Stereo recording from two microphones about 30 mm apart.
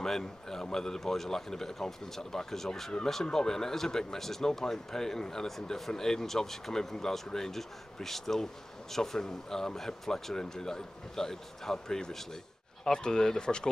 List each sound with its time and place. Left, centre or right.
0.0 s speech: centre